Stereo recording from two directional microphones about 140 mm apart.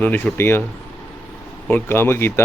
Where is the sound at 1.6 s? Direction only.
15° left (ahead or behind).